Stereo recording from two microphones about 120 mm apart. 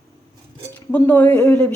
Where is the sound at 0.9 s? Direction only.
15° left (ahead or behind).